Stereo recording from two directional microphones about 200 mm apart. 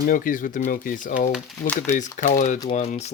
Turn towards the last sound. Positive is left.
turn(degrees=30)  # may be behind; listen again after turning